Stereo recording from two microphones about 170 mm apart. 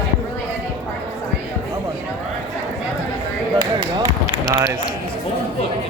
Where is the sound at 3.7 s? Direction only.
25° right (ahead or behind).